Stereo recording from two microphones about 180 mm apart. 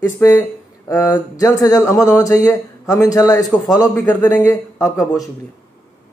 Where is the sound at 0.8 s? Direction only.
20° left (ahead or behind).